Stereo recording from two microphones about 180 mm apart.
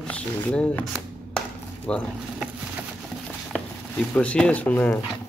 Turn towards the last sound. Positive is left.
turn(degrees=10)  # may be behind; listen again after turning